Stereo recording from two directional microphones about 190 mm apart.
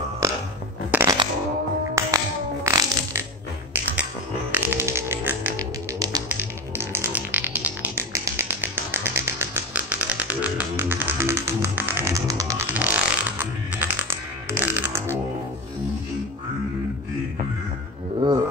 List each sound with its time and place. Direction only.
0.2 s a sound: 15° right (ahead or behind)
0.9 s shuffling cards: 10° right (ahead or behind)
2.0 s music: 15° right (ahead or behind)
18.2 s music: 25° right (ahead or behind)